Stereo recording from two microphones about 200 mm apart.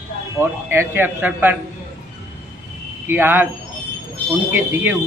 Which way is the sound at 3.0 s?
10° right (ahead or behind).